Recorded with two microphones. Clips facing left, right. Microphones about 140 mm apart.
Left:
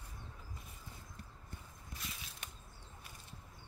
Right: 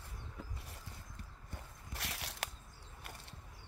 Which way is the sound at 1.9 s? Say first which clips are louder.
Right 4 dB; 75° right (ahead or behind).